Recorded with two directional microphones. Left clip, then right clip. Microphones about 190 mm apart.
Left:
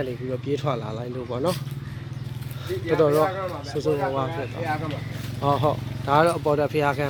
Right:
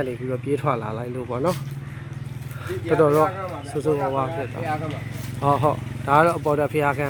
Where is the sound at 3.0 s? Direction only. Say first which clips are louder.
Right 2 dB; 20° right (ahead or behind).